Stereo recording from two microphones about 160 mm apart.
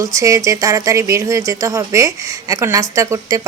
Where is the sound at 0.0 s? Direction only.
20° right (ahead or behind).